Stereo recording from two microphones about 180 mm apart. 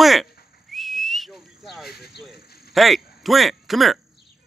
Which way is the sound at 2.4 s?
60° left (ahead or behind).